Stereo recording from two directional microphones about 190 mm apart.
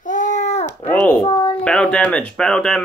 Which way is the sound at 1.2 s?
25° left (ahead or behind).